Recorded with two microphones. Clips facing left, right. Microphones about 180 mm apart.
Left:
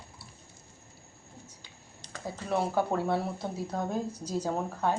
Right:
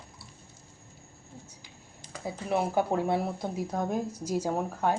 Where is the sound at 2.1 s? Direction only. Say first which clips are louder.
Right 2 dB; 15° right (ahead or behind).